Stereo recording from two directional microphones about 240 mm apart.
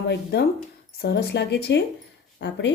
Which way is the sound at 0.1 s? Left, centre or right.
Left.